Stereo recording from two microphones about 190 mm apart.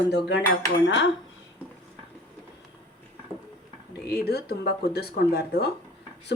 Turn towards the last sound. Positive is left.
turn(degrees=60)  # may be behind; listen again after turning